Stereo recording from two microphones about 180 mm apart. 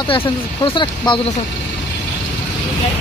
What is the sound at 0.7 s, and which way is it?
Speech, 25° left (ahead or behind).